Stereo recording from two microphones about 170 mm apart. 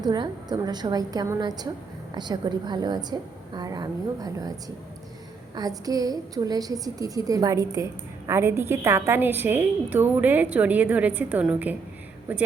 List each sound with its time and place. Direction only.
0.0 s a woman's voice: 25° right (ahead or behind)
5.5 s a woman's voice: 20° right (ahead or behind)